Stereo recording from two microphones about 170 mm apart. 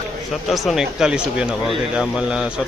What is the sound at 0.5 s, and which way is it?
Speech, centre (ahead or behind).